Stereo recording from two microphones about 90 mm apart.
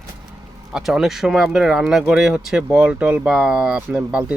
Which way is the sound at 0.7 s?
5° right (ahead or behind).